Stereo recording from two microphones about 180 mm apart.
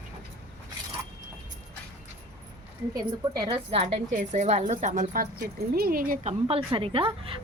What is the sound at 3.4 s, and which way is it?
A woman's voice, 30° right (ahead or behind).